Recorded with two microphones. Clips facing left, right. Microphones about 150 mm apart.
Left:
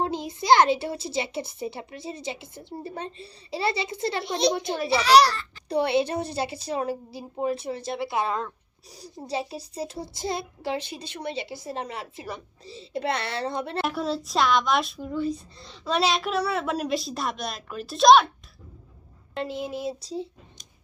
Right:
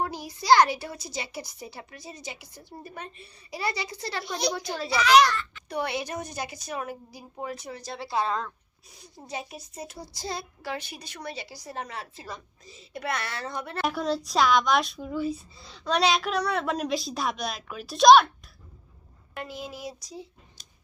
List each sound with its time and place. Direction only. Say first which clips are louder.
0.0 s a child's voice: left 4 dB; 25° left (ahead or behind)
8.9 s a child's voice: left 6 dB; 35° left (ahead or behind)
13.8 s speech: even; centre (ahead or behind)
19.3 s a child's voice: left 7 dB; 25° left (ahead or behind)